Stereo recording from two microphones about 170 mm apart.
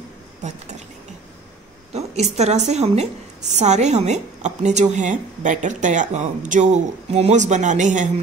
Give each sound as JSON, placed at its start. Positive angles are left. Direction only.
{"t": 0.4, "sound": "speech", "side_deg": -45}
{"t": 2.0, "sound": "a woman's voice", "side_deg": -40}